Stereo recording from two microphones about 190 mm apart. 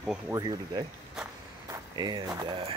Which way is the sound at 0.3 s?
20° right (ahead or behind).